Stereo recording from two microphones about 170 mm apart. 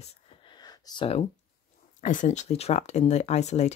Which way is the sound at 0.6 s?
25° left (ahead or behind).